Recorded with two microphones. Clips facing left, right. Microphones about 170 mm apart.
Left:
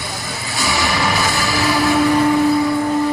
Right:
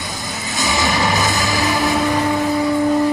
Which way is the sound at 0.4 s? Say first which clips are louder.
Right 1 dB; 20° right (ahead or behind).